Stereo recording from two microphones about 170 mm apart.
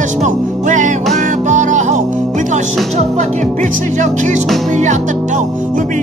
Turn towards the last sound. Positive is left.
turn(degrees=-45)  # may be behind; listen again after turning